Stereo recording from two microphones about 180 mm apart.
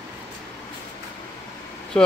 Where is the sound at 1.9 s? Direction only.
5° left (ahead or behind).